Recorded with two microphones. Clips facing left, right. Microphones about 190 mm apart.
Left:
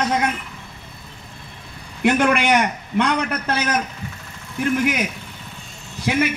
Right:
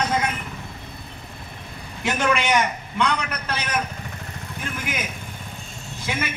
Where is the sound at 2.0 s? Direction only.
60° left (ahead or behind).